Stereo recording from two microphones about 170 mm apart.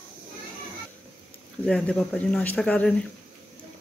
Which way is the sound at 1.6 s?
5° left (ahead or behind).